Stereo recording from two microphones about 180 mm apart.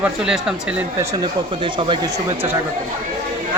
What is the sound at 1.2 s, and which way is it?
Speech, 25° right (ahead or behind).